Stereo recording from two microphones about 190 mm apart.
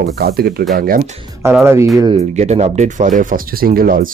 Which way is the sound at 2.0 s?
30° right (ahead or behind).